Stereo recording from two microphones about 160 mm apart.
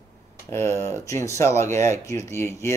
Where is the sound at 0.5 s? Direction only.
15° left (ahead or behind).